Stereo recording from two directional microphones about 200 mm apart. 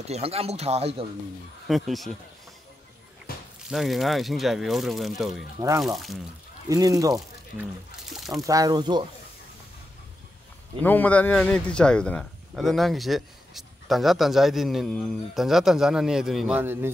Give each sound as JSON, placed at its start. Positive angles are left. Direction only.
{"t": 0.0, "sound": "speech", "side_deg": -30}
{"t": 1.7, "sound": "speech", "side_deg": 0}
{"t": 3.3, "sound": "a sound", "side_deg": 45}
{"t": 3.6, "sound": "speech", "side_deg": 0}
{"t": 6.7, "sound": "speech", "side_deg": -15}
{"t": 8.1, "sound": "speech", "side_deg": 0}
{"t": 8.5, "sound": "speech", "side_deg": -20}
{"t": 10.8, "sound": "speech", "side_deg": 10}